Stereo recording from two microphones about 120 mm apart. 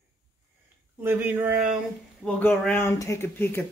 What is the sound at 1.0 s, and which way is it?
Speech, 15° right (ahead or behind).